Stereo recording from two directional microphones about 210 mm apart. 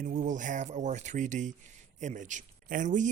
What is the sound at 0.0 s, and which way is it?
A man's voice, 35° right (ahead or behind).